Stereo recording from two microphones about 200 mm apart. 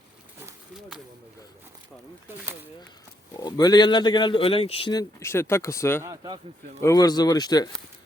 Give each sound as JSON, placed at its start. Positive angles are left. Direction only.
{"t": 0.3, "sound": "a sound", "side_deg": -5}
{"t": 3.3, "sound": "speech", "side_deg": 20}
{"t": 6.0, "sound": "speech", "side_deg": -20}
{"t": 6.8, "sound": "speech", "side_deg": 20}